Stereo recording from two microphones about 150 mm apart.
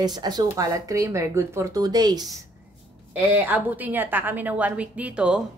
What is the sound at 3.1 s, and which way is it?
A woman's voice, 10° right (ahead or behind).